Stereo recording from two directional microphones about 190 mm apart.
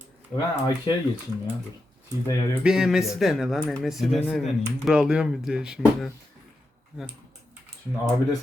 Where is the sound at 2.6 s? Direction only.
5° right (ahead or behind).